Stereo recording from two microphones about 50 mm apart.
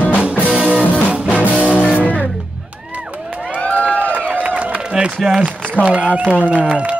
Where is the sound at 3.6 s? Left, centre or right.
Left.